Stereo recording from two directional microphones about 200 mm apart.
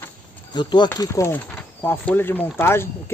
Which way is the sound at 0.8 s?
15° left (ahead or behind).